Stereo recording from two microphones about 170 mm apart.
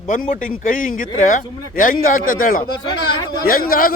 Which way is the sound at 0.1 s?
55° left (ahead or behind).